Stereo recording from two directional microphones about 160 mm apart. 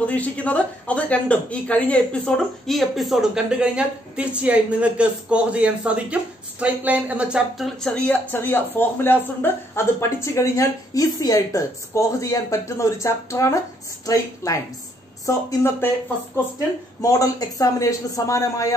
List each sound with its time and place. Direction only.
0.0 s speech: 10° left (ahead or behind)
17.0 s speech: 20° left (ahead or behind)